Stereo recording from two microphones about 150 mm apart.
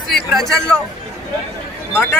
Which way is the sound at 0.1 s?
Centre (ahead or behind).